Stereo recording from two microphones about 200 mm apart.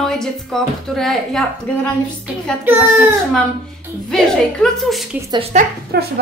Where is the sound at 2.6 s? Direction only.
10° right (ahead or behind).